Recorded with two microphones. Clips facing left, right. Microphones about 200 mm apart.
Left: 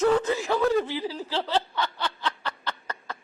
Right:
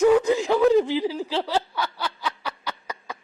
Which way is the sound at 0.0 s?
10° right (ahead or behind).